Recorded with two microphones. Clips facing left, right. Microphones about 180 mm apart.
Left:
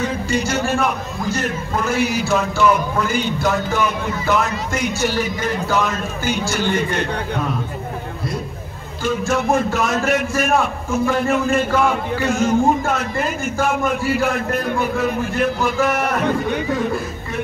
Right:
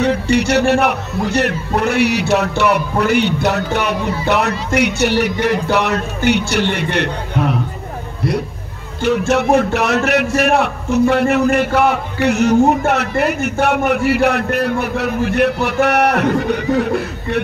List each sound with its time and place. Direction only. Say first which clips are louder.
0.0 s a man's voice: right 6 dB; 70° right (ahead or behind)
9.3 s a man's voice: right 4 dB; 70° right (ahead or behind)